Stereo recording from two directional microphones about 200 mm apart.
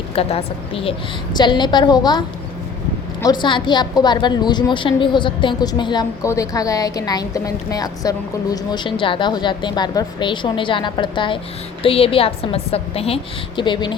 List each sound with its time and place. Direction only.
0.2 s a woman's voice: 30° left (ahead or behind)
3.2 s a woman's voice: 25° left (ahead or behind)